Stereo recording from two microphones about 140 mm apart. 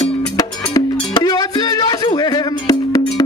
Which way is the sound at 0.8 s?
30° left (ahead or behind).